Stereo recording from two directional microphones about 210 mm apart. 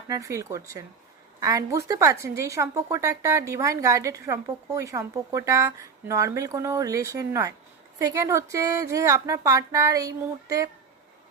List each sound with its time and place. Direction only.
0.1 s a woman's voice: 15° right (ahead or behind)